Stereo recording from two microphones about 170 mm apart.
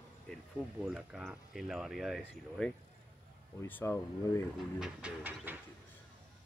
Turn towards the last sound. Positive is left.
turn(degrees=-10)  # may be behind; listen again after turning